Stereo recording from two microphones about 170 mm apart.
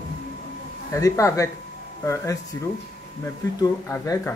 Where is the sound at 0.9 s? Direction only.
20° left (ahead or behind).